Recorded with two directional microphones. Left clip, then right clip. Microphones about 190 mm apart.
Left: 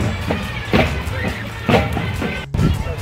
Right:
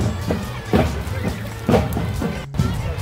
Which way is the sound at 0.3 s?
45° right (ahead or behind).